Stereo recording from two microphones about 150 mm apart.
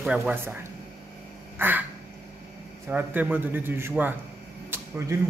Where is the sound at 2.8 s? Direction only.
10° right (ahead or behind).